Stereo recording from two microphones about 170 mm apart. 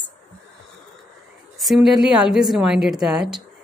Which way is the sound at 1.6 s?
Centre (ahead or behind).